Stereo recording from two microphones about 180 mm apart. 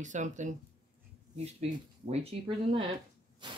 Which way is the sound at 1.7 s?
35° right (ahead or behind).